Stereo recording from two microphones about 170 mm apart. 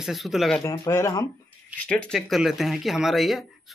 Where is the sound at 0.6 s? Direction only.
15° left (ahead or behind).